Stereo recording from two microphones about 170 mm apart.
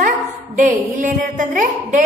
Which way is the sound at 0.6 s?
50° right (ahead or behind).